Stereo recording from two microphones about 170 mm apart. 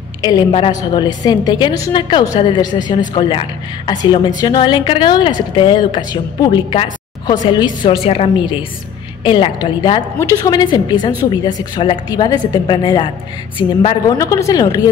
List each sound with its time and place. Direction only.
0.2 s a woman's voice: 30° left (ahead or behind)
14.1 s a woman's voice: 20° left (ahead or behind)